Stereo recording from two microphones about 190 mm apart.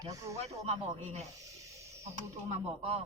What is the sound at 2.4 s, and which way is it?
Speech, 35° right (ahead or behind).